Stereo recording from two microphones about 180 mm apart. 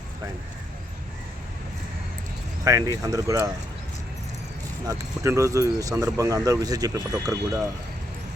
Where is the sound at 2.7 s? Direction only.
20° right (ahead or behind).